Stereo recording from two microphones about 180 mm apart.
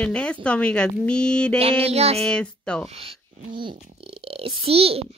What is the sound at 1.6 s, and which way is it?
Mantra, 35° right (ahead or behind).